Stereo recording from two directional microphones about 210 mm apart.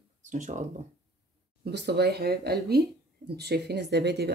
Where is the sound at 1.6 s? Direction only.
50° right (ahead or behind).